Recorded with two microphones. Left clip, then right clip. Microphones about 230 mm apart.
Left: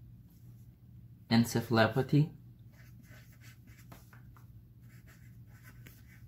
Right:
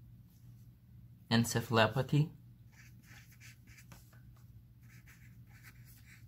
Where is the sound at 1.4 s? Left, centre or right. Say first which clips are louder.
Left 1 dB; right.